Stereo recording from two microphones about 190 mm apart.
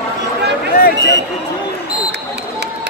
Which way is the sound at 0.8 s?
55° left (ahead or behind).